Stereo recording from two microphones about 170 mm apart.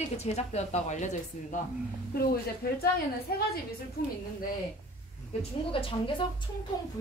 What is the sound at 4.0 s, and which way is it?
Speech, 60° left (ahead or behind).